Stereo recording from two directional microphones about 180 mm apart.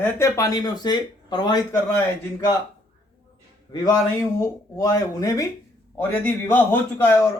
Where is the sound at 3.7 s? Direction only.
20° left (ahead or behind).